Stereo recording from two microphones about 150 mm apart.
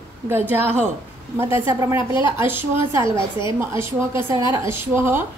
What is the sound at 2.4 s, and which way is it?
Speech, 15° right (ahead or behind).